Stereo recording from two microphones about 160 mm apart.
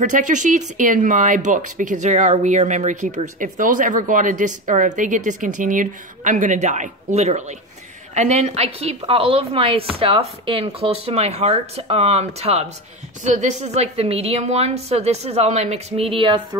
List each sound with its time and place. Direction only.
0.0 s a woman's voice: 50° right (ahead or behind); by 16.3 s 35° right (ahead or behind)